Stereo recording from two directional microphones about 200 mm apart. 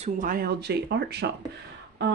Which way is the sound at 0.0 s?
45° right (ahead or behind).